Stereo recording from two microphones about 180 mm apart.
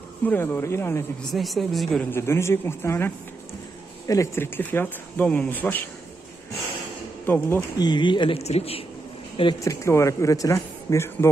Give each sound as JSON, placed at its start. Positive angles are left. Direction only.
{"t": 0.2, "sound": "speech", "side_deg": 10}
{"t": 1.2, "sound": "speech", "side_deg": 0}
{"t": 4.1, "sound": "speech", "side_deg": 15}
{"t": 7.2, "sound": "speech", "side_deg": 10}
{"t": 7.7, "sound": "speech", "side_deg": 25}
{"t": 9.4, "sound": "speech", "side_deg": 20}